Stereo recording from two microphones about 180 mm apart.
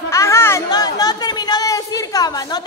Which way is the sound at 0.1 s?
15° left (ahead or behind).